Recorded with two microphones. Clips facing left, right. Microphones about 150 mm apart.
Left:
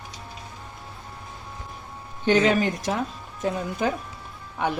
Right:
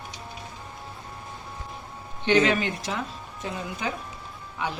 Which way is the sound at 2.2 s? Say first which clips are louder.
Left 2 dB; 40° left (ahead or behind).